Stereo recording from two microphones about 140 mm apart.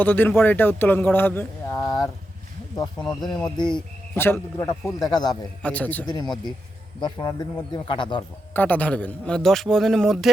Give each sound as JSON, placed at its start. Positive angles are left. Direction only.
{"t": 0.0, "sound": "speech", "side_deg": 15}
{"t": 3.2, "sound": "speech", "side_deg": 30}
{"t": 4.1, "sound": "a man's voice", "side_deg": 15}
{"t": 5.6, "sound": "speech", "side_deg": 10}
{"t": 6.1, "sound": "speech", "side_deg": 30}
{"t": 8.5, "sound": "a man's voice", "side_deg": 10}